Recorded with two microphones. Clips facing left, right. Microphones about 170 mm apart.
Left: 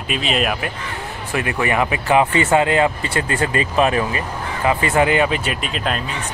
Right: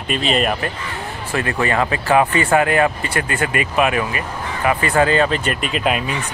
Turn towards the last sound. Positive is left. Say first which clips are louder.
# right 4 dB
turn(degrees=-10)  # may be behind; listen again after turning